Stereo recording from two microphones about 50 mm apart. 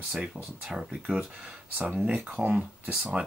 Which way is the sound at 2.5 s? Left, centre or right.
Centre.